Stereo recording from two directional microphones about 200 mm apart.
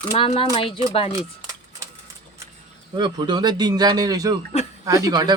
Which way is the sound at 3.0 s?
25° right (ahead or behind).